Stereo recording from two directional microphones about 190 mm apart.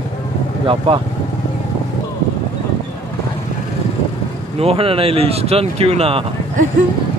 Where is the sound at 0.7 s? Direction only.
30° right (ahead or behind).